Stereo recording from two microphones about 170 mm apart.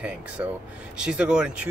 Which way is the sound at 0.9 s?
5° right (ahead or behind).